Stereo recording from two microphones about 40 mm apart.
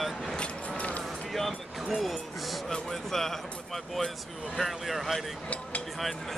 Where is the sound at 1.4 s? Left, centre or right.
Centre.